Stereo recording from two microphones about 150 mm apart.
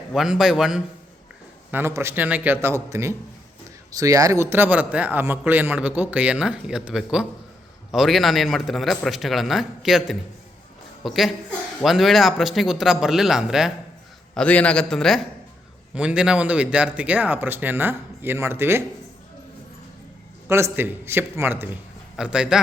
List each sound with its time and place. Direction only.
0.1 s a man's voice: 5° right (ahead or behind)
1.7 s a man's voice: 15° right (ahead or behind)
14.3 s a man's voice: 10° left (ahead or behind); by 18.8 s 15° right (ahead or behind)
20.5 s a man's voice: 15° right (ahead or behind)